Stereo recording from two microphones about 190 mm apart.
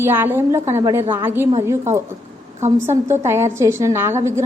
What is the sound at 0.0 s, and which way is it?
A woman's voice, 10° right (ahead or behind).